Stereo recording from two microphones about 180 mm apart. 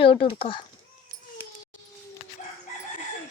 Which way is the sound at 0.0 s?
30° left (ahead or behind).